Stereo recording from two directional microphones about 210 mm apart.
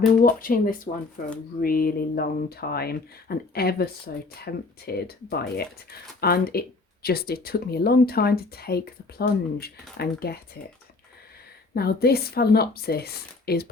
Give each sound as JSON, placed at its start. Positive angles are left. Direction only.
{"t": 0.2, "sound": "speech", "side_deg": 45}
{"t": 11.7, "sound": "speech", "side_deg": 50}